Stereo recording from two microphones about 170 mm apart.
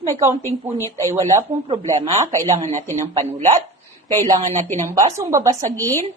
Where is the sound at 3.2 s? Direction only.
40° right (ahead or behind).